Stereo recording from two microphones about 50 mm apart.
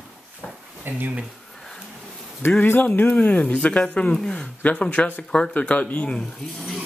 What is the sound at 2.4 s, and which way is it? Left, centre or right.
Speech, left.